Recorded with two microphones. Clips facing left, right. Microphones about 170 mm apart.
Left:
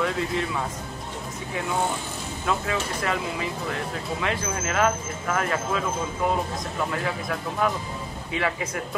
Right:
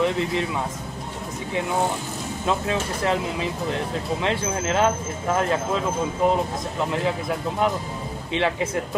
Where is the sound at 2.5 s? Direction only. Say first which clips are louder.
Right 2 dB; 25° right (ahead or behind).